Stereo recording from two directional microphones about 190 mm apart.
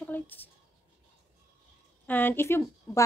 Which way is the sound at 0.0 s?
10° left (ahead or behind).